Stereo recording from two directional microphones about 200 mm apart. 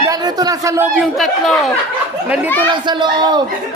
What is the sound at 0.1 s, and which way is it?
Speech, 20° right (ahead or behind).